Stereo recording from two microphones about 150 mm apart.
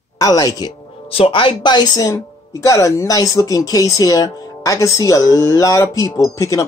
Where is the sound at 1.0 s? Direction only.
40° left (ahead or behind).